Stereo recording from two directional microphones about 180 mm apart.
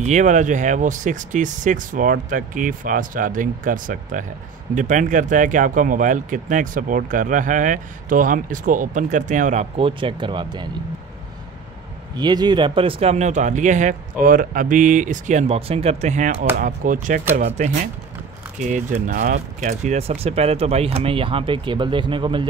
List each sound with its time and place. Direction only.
0.0 s speech: 40° right (ahead or behind); by 10.7 s 25° right (ahead or behind)
12.2 s speech: 25° right (ahead or behind)